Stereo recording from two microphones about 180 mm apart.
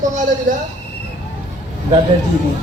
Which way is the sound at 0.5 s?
45° right (ahead or behind).